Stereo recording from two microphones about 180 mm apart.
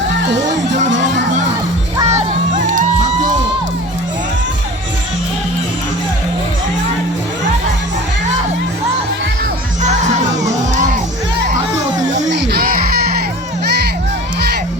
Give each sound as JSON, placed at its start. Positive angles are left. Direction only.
{"t": 0.4, "sound": "music", "side_deg": -40}
{"t": 2.0, "sound": "music", "side_deg": -40}
{"t": 9.8, "sound": "music", "side_deg": -40}
{"t": 12.3, "sound": "music", "side_deg": -65}